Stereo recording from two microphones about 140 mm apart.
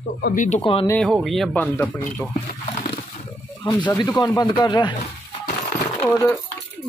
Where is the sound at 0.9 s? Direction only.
5° left (ahead or behind).